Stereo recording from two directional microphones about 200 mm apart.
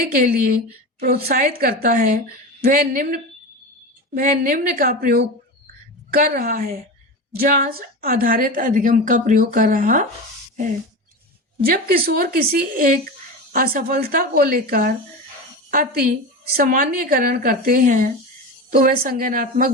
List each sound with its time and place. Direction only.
0.2 s a woman's voice: 45° right (ahead or behind)
11.6 s speech: 50° right (ahead or behind)